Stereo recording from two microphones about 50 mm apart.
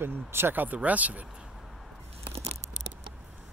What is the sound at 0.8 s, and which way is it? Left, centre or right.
Speech, right.